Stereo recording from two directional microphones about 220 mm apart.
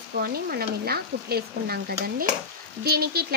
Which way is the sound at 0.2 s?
45° right (ahead or behind).